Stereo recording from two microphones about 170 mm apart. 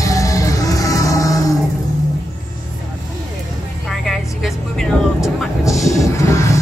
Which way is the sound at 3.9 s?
Centre (ahead or behind).